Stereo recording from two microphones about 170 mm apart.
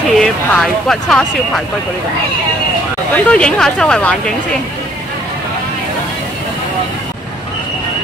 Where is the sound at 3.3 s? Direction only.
5° left (ahead or behind).